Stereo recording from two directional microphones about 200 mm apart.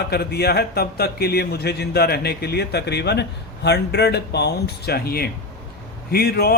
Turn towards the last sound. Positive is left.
turn(degrees=50)  # may be behind; listen again after turning